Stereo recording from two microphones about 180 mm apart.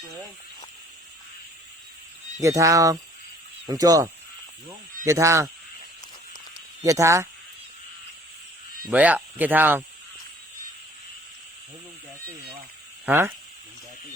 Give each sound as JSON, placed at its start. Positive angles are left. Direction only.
{"t": 2.4, "sound": "speech", "side_deg": -15}
{"t": 6.8, "sound": "speech", "side_deg": -15}
{"t": 8.9, "sound": "speech", "side_deg": -10}
{"t": 13.1, "sound": "speech", "side_deg": -10}